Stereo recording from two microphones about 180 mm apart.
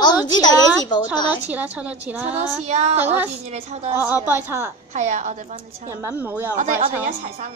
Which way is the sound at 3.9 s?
10° right (ahead or behind).